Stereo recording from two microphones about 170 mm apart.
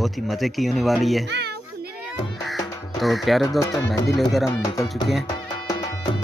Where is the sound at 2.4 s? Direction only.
Centre (ahead or behind).